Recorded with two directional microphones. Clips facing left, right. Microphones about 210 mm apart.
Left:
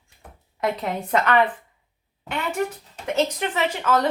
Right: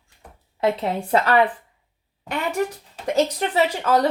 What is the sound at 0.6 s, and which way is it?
Speech, 30° right (ahead or behind).